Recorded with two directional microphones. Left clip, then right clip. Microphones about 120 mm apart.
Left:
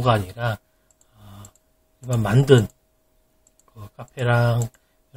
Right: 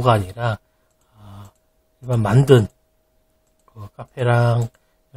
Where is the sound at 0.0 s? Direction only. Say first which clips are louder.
Right 3 dB; 35° right (ahead or behind).